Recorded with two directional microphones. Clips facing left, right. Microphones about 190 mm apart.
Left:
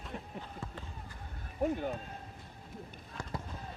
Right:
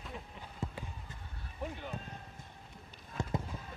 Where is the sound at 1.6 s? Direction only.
45° left (ahead or behind).